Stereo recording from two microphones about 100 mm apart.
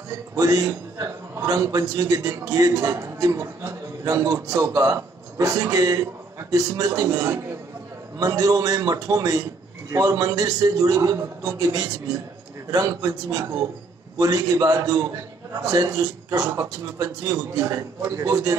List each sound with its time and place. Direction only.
0.4 s a man's voice: 35° right (ahead or behind)